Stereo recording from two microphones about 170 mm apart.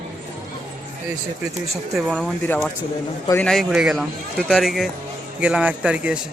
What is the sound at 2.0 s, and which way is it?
Speech, 5° left (ahead or behind).